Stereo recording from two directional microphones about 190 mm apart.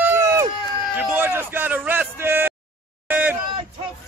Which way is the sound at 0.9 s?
10° right (ahead or behind).